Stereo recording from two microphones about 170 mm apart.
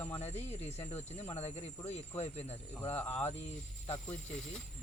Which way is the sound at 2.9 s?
10° left (ahead or behind).